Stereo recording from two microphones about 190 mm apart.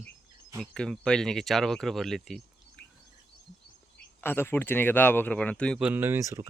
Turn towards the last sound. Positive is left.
turn(degrees=-15)  # may be behind; listen again after turning